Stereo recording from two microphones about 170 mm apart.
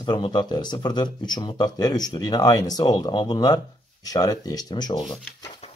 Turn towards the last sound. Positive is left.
turn(degrees=0)  # may be behind; listen again after turning